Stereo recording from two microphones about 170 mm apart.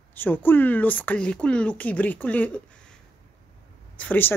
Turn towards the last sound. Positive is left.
turn(degrees=10)  # may be behind; listen again after turning